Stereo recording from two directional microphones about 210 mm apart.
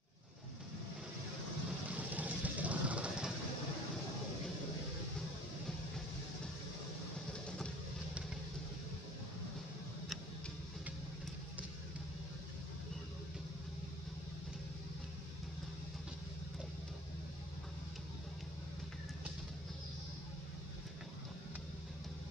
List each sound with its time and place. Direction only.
1.9 s vehicle: 5° right (ahead or behind)
7.4 s vehicle: 5° left (ahead or behind)